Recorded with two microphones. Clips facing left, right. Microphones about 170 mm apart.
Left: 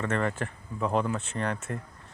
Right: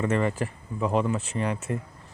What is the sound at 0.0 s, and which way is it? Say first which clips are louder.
Speech: right 4 dB; 5° right (ahead or behind).